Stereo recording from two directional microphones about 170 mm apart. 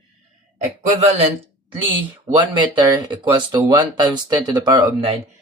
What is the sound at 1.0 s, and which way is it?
Speech, 35° right (ahead or behind).